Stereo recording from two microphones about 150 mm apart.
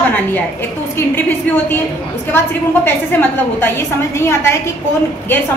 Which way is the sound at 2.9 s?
15° left (ahead or behind).